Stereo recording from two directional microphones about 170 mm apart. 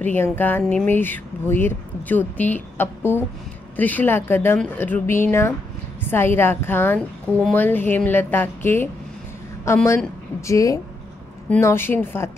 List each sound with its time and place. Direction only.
0.0 s speech: 10° left (ahead or behind)
9.8 s speech: 15° left (ahead or behind)